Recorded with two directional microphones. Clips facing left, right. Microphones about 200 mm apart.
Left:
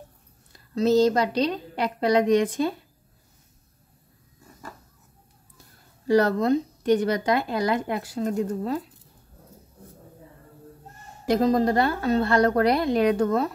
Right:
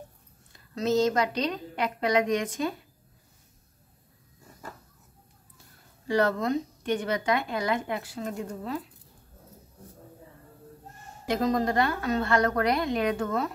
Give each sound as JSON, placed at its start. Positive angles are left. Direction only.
{"t": 0.5, "sound": "a woman's voice", "side_deg": 35}
{"t": 6.0, "sound": "a woman's voice", "side_deg": 40}
{"t": 11.2, "sound": "a woman's voice", "side_deg": 35}